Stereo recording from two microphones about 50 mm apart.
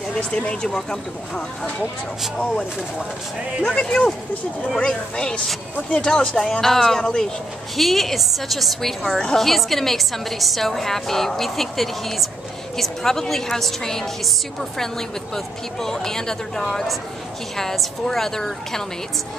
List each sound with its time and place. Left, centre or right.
0.1 s a woman's voice: centre
3.8 s a woman's voice: centre
7.7 s a woman's voice: centre